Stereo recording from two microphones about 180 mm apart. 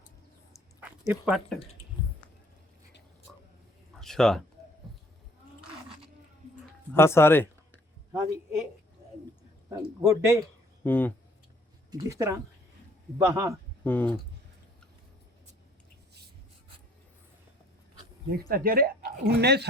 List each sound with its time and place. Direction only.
0.8 s speech: 10° right (ahead or behind)
4.0 s speech: 5° left (ahead or behind)
4.9 s horse: centre (ahead or behind)
6.9 s speech: 15° left (ahead or behind)
9.6 s speech: 15° right (ahead or behind)
10.8 s speech: 10° left (ahead or behind)
11.9 s speech: 20° right (ahead or behind)
13.8 s speech: 10° left (ahead or behind)
18.3 s speech: 55° right (ahead or behind)